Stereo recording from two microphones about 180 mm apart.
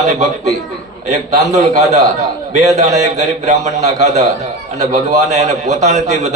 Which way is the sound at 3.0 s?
40° right (ahead or behind).